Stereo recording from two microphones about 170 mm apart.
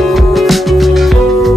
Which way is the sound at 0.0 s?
Centre (ahead or behind).